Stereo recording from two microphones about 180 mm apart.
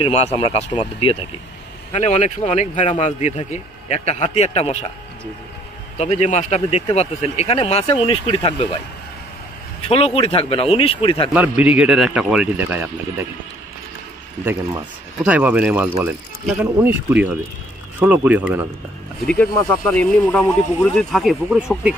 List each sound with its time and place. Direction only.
0.0 s speech: 35° left (ahead or behind)
5.9 s speech: 35° left (ahead or behind)
9.8 s speech: 30° left (ahead or behind)
11.3 s speech: 10° right (ahead or behind)
14.4 s speech: 10° right (ahead or behind)
19.9 s speech: 10° left (ahead or behind)